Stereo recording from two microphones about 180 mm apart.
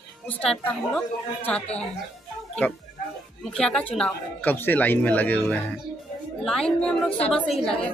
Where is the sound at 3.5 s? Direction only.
5° left (ahead or behind).